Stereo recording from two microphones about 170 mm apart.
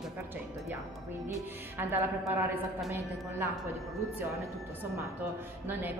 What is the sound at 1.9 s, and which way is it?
Speech, 15° right (ahead or behind).